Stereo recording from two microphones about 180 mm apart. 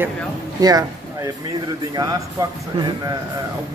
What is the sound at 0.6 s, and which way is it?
Speech, 20° right (ahead or behind).